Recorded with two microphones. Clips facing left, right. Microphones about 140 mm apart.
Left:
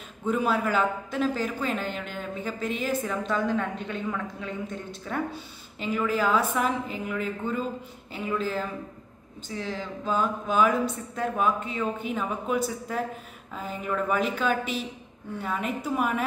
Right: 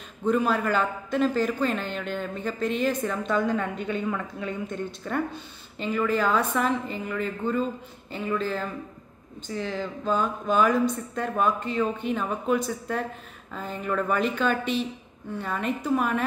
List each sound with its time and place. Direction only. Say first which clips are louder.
0.3 s a man's voice: right 2 dB; 5° left (ahead or behind)